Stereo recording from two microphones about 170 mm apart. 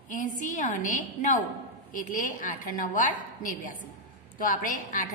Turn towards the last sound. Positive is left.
turn(degrees=50)  # may be behind; listen again after turning